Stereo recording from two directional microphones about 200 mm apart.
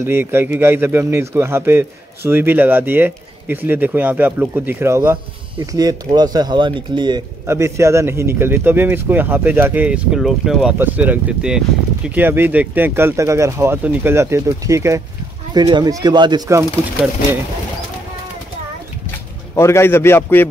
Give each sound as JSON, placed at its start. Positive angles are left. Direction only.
{"t": 0.0, "sound": "a man's voice", "side_deg": -10}
{"t": 19.5, "sound": "a man's voice", "side_deg": 15}